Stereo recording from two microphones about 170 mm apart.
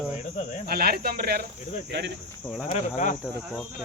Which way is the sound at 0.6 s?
65° right (ahead or behind).